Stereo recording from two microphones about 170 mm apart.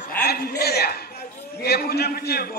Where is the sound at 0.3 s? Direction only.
70° left (ahead or behind).